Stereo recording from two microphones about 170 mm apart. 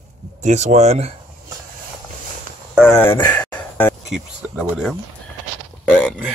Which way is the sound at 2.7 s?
5° right (ahead or behind).